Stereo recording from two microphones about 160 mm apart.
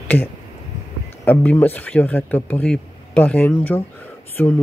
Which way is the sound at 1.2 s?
10° left (ahead or behind).